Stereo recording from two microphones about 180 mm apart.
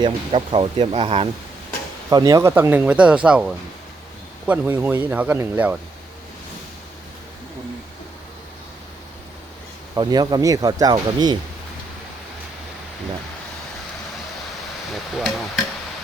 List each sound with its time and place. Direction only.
0.0 s speech: 30° right (ahead or behind)
2.0 s speech: 20° right (ahead or behind)
9.9 s speech: 20° right (ahead or behind)
14.9 s speech: centre (ahead or behind)